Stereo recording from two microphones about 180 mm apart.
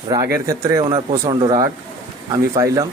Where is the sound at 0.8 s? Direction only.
30° right (ahead or behind); by 2.7 s 15° right (ahead or behind).